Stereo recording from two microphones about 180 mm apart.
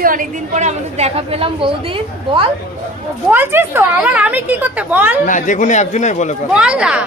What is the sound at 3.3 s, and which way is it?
Speech, 10° right (ahead or behind).